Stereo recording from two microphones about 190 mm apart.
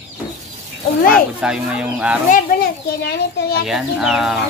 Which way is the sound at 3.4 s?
60° left (ahead or behind).